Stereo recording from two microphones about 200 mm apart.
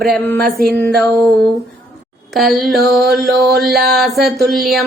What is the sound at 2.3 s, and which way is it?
Mantra, centre (ahead or behind).